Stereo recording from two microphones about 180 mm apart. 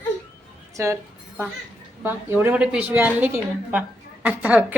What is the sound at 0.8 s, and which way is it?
Speech, 15° right (ahead or behind).